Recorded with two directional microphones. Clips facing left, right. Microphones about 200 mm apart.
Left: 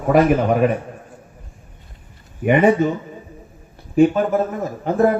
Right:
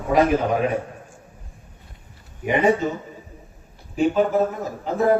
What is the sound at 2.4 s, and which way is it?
Speech, 60° left (ahead or behind).